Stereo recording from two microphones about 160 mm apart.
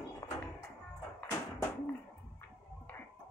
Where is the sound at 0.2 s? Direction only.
20° left (ahead or behind).